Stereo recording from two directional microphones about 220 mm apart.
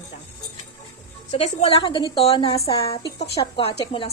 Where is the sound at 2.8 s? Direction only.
15° left (ahead or behind).